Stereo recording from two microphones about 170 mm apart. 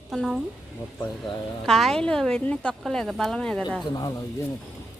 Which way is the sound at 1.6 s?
Centre (ahead or behind).